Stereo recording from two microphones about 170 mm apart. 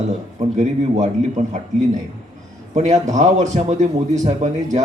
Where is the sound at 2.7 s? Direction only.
40° right (ahead or behind).